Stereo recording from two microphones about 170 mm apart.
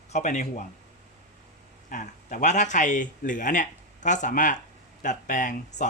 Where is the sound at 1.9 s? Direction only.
45° left (ahead or behind).